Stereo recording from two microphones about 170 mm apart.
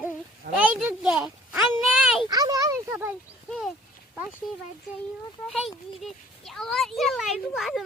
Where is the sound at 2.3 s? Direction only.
20° right (ahead or behind).